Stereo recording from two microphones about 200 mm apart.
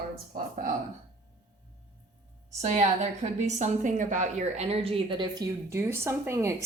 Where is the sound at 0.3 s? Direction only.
40° right (ahead or behind).